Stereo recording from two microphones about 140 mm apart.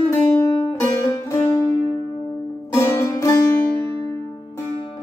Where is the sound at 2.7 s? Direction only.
20° left (ahead or behind).